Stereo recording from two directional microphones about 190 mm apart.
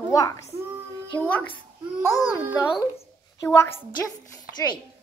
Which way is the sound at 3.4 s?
15° left (ahead or behind).